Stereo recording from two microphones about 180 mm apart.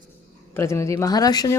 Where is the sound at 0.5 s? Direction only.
15° left (ahead or behind).